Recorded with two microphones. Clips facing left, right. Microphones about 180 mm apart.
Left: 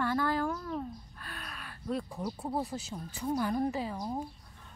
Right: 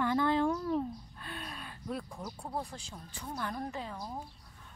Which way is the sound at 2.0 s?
20° left (ahead or behind).